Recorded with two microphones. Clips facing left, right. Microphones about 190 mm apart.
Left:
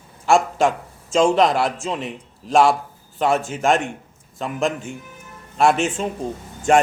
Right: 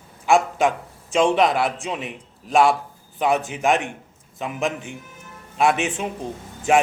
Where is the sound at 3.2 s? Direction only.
20° right (ahead or behind).